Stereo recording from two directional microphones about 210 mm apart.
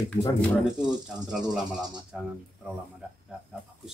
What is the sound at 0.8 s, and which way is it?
Speech, 5° right (ahead or behind).